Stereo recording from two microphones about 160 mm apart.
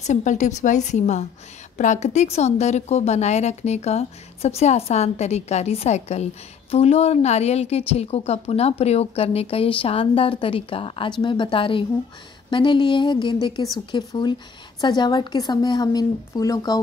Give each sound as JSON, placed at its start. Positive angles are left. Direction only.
{"t": 0.0, "sound": "a woman's voice", "side_deg": 50}